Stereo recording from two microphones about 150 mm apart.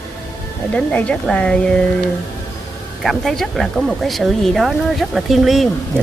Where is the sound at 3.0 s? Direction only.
Centre (ahead or behind).